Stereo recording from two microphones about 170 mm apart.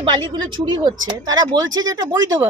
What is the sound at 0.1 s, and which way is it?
Speech, 30° right (ahead or behind).